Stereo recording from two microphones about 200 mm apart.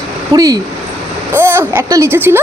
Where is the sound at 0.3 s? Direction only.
20° right (ahead or behind).